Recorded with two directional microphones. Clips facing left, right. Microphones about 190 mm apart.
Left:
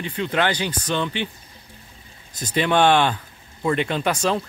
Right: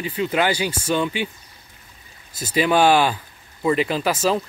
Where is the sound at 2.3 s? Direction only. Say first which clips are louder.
Right 1 dB; 5° right (ahead or behind).